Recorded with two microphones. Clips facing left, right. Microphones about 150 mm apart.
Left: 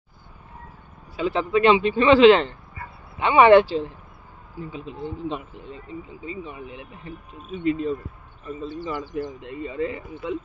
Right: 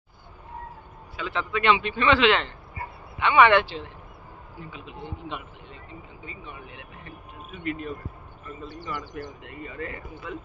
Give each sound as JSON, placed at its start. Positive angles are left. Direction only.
{"t": 1.1, "sound": "a man's voice", "side_deg": 35}